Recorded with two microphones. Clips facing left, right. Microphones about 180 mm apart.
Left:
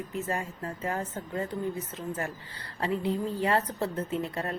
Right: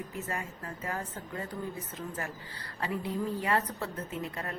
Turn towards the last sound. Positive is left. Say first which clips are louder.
# left 5 dB
turn(degrees=30)  # may be behind; listen again after turning